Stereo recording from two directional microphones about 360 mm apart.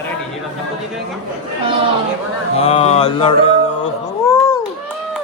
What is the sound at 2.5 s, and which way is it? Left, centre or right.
Mantra, centre.